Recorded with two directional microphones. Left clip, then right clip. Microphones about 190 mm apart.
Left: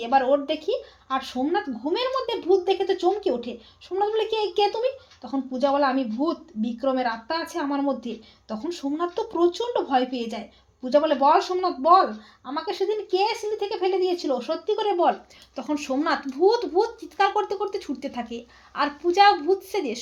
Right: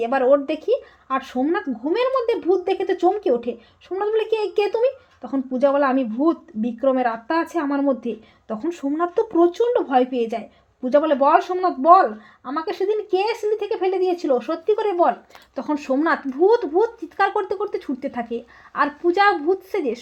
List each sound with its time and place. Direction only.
0.0 s a woman's voice: 45° right (ahead or behind)